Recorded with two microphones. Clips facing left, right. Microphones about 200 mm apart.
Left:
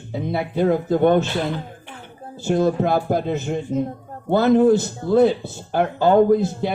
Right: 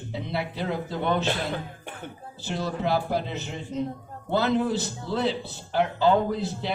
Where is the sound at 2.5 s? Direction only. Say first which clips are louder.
Left 9 dB; 50° left (ahead or behind).